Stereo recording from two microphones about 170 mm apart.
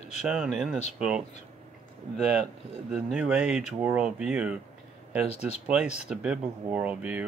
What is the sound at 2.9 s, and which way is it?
Speech, 5° right (ahead or behind).